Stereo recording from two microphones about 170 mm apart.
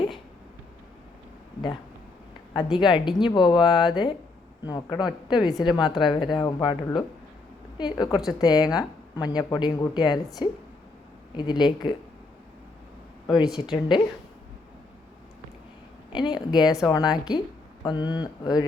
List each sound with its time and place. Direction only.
2.7 s speech: 25° left (ahead or behind)
7.8 s speech: 25° left (ahead or behind)
11.3 s speech: 25° left (ahead or behind)
13.2 s speech: 25° left (ahead or behind)
16.1 s speech: 25° left (ahead or behind)